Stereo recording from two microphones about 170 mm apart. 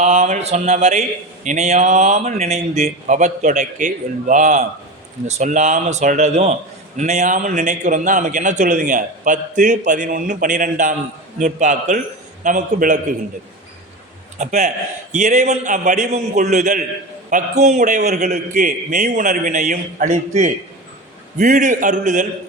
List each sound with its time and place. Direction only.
0.0 s mantra: 40° right (ahead or behind)
1.5 s a man's voice: 40° right (ahead or behind)
14.3 s mantra: 40° right (ahead or behind)
15.1 s a man's voice: 45° right (ahead or behind)